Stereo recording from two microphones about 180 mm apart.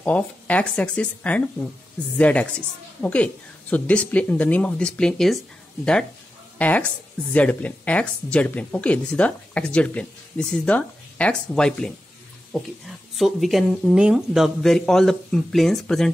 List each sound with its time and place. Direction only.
0.0 s speech: 5° left (ahead or behind)
6.6 s speech: 10° left (ahead or behind)